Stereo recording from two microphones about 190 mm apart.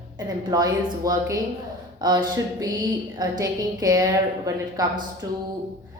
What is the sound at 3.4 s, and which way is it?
A woman's voice, 20° right (ahead or behind).